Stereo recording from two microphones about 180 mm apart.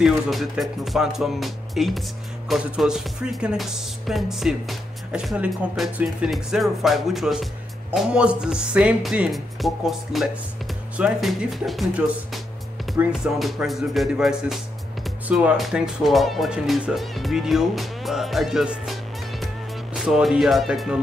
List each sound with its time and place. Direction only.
0.0 s music: centre (ahead or behind)